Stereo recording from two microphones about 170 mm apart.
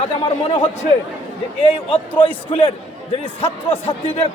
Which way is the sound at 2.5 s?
30° left (ahead or behind).